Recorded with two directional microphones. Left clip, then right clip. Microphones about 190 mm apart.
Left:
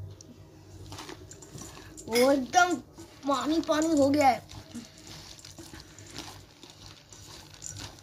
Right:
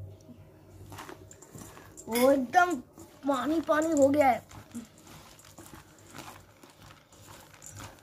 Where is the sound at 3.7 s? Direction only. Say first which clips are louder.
Right 1 dB; centre (ahead or behind).